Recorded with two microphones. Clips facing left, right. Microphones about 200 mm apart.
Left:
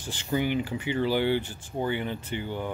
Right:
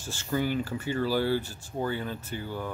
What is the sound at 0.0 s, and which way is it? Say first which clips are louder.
Speech: left 1 dB; 15° left (ahead or behind).